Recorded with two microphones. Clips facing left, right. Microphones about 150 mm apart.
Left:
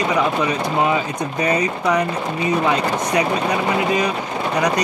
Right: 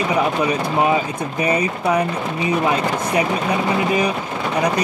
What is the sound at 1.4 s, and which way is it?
Speech, 10° right (ahead or behind).